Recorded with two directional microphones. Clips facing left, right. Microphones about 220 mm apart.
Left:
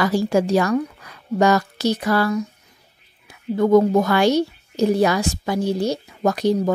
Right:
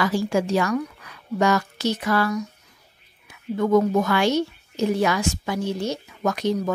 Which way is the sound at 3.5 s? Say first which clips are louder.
Left 4 dB; 35° left (ahead or behind).